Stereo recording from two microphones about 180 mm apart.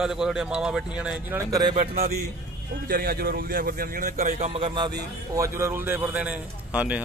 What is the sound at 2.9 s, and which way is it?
Speech, 55° right (ahead or behind).